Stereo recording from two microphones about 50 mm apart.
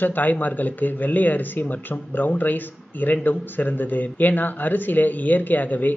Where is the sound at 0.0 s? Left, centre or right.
Left.